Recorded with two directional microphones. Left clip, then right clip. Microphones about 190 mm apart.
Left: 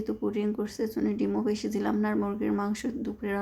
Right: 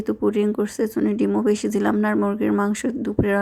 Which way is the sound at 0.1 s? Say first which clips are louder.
Right 11 dB; 35° right (ahead or behind).